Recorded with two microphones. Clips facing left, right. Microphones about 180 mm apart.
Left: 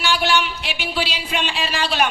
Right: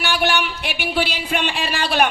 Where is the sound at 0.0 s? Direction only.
55° right (ahead or behind).